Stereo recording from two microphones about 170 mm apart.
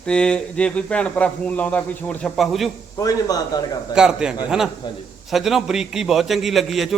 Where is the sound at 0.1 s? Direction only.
5° left (ahead or behind).